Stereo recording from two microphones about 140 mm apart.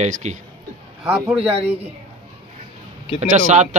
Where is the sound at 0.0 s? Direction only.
55° right (ahead or behind).